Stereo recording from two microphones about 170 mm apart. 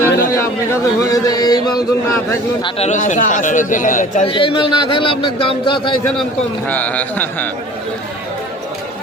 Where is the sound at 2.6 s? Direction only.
40° left (ahead or behind).